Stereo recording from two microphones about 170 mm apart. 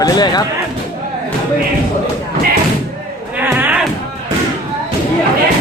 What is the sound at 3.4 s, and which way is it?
Music, 10° right (ahead or behind).